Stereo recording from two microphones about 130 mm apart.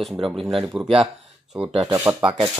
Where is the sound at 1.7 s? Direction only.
45° right (ahead or behind).